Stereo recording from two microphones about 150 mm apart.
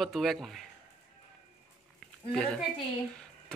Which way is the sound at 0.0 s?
Centre (ahead or behind).